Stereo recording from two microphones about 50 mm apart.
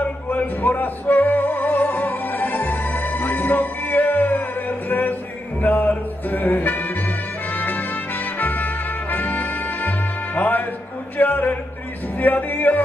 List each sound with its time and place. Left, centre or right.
0.3 s music: left
11.1 s a sound: left
12.2 s music: left